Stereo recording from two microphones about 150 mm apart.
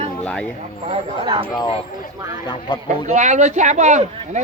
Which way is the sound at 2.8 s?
50° right (ahead or behind).